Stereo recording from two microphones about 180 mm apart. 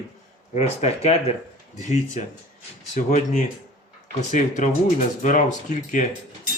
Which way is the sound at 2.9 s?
45° left (ahead or behind).